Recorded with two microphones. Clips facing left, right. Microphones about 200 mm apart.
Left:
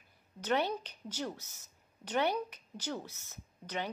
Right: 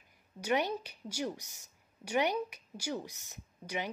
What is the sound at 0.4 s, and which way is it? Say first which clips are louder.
A woman's voice: even; 10° right (ahead or behind).